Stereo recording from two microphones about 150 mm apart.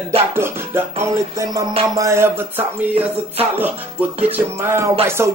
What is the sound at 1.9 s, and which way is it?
Speech, 20° right (ahead or behind).